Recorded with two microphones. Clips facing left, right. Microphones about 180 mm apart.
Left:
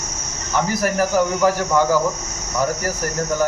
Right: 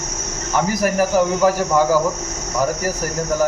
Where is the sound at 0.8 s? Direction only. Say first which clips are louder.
Right 2 dB; 10° right (ahead or behind).